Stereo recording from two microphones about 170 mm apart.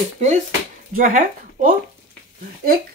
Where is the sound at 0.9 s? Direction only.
50° right (ahead or behind).